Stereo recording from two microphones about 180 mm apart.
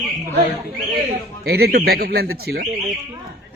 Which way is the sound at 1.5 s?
60° right (ahead or behind).